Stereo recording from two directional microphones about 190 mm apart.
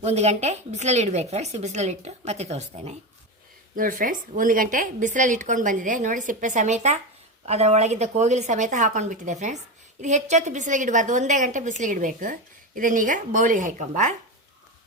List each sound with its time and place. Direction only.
0.0 s a woman's voice: 35° right (ahead or behind)
3.8 s a woman's voice: 45° right (ahead or behind)